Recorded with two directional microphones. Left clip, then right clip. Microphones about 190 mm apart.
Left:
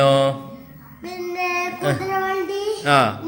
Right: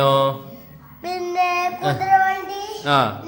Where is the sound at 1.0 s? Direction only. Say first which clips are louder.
Right 4 dB; 35° right (ahead or behind).